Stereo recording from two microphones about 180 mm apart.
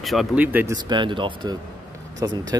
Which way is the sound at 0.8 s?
25° right (ahead or behind).